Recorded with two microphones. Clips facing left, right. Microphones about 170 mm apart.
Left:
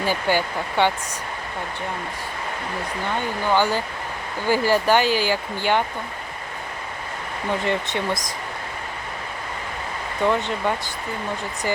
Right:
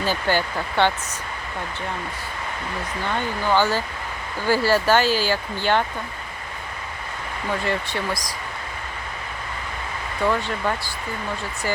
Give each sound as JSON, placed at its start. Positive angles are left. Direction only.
{"t": 0.0, "sound": "speech", "side_deg": 15}
{"t": 3.4, "sound": "speech", "side_deg": 15}
{"t": 7.6, "sound": "speech", "side_deg": 20}
{"t": 10.2, "sound": "speech", "side_deg": 20}